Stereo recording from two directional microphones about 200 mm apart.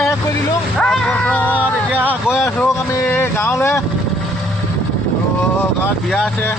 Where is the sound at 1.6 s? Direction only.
10° right (ahead or behind).